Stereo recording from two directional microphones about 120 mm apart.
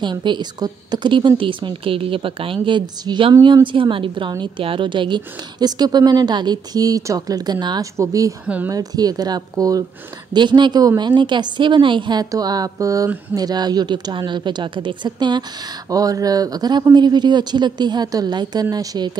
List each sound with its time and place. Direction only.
0.0 s a woman's voice: 40° right (ahead or behind)